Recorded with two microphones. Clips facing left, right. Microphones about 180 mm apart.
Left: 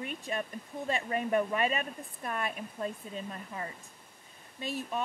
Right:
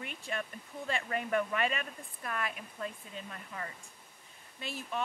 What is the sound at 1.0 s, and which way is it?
Speech, 25° left (ahead or behind).